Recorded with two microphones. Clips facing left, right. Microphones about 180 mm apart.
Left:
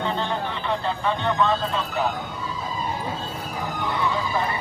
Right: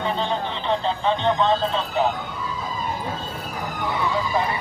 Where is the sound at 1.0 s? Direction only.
25° right (ahead or behind).